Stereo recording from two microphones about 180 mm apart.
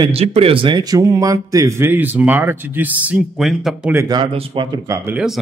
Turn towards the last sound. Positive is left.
turn(degrees=-5)  # may be behind; listen again after turning